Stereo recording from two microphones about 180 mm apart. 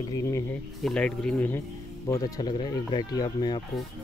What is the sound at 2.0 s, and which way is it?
Speech, 20° left (ahead or behind).